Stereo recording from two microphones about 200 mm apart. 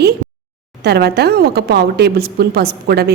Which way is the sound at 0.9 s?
55° right (ahead or behind).